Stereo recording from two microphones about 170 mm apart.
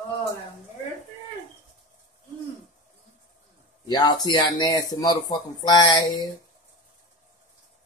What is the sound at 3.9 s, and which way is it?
Speech, 25° left (ahead or behind).